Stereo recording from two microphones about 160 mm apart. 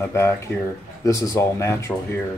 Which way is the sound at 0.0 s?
15° left (ahead or behind).